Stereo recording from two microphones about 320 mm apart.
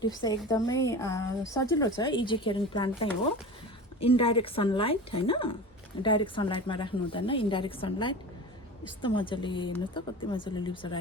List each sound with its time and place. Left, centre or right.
0.0 s a woman's voice: centre
4.0 s a woman's voice: centre